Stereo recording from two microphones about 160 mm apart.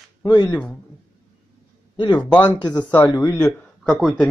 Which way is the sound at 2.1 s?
10° left (ahead or behind).